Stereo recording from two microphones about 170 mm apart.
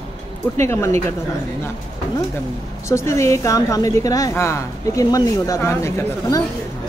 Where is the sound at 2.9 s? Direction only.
15° left (ahead or behind).